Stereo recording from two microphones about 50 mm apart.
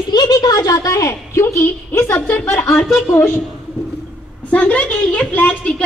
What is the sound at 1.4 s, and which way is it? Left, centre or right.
Speech, left.